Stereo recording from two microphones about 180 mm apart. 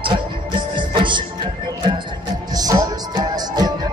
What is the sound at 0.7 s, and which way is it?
Music, 25° right (ahead or behind).